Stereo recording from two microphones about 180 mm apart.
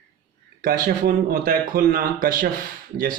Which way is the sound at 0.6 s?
50° right (ahead or behind).